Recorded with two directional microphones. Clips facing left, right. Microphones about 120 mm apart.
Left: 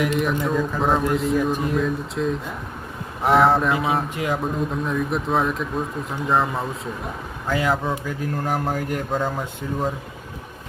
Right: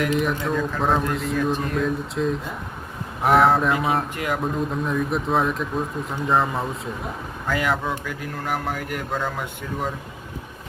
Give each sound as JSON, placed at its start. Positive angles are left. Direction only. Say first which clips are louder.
{"t": 0.2, "sound": "a man's voice", "louder": "left 1 dB", "side_deg": 0}
{"t": 4.1, "sound": "speech", "louder": "left 2 dB", "side_deg": 20}
{"t": 4.4, "sound": "a man's voice", "louder": "even", "side_deg": 0}
{"t": 7.4, "sound": "speech", "louder": "left 2 dB", "side_deg": 25}